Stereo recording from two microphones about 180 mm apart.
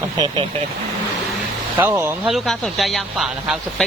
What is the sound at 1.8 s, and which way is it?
Speech, 10° right (ahead or behind).